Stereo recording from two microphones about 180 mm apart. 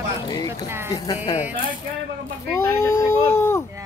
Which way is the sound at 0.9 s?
25° left (ahead or behind).